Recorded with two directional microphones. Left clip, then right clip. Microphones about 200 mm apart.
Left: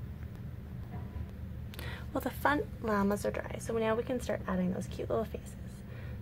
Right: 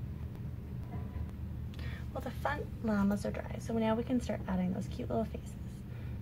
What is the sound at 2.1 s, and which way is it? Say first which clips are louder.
A woman's voice: left 6 dB; 40° left (ahead or behind).